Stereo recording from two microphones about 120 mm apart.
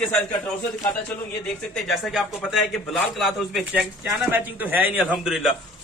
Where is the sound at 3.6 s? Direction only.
10° right (ahead or behind).